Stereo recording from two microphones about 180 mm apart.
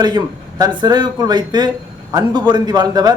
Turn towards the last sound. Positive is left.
turn(degrees=-20)  # may be behind; listen again after turning